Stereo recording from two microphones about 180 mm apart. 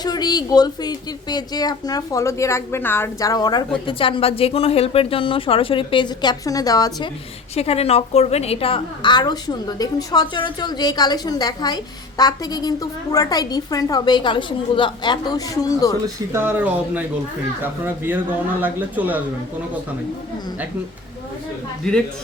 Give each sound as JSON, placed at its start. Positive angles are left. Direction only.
{"t": 0.0, "sound": "a woman's voice", "side_deg": 20}
{"t": 7.5, "sound": "a woman's voice", "side_deg": 35}
{"t": 16.0, "sound": "speech", "side_deg": -15}